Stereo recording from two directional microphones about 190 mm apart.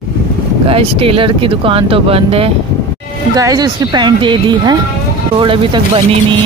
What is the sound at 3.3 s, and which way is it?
Speech, 20° right (ahead or behind).